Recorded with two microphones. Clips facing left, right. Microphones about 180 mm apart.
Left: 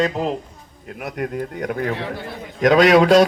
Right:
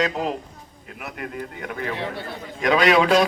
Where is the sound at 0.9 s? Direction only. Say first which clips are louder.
Left 7 dB; 45° left (ahead or behind).